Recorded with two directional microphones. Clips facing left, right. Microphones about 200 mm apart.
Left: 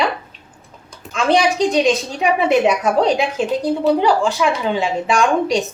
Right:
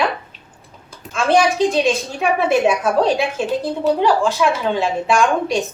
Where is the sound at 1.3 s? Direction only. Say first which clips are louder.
Even; 15° left (ahead or behind).